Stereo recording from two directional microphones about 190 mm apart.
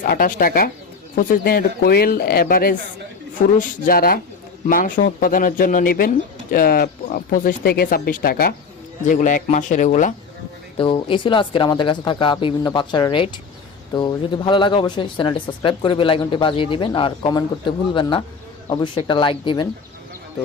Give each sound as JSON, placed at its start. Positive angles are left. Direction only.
{"t": 0.0, "sound": "speech", "side_deg": 45}
{"t": 3.8, "sound": "speech", "side_deg": 50}
{"t": 10.8, "sound": "speech", "side_deg": 25}